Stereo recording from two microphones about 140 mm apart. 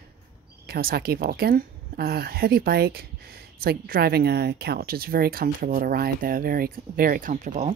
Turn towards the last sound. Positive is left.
turn(degrees=-60)  # may be behind; listen again after turning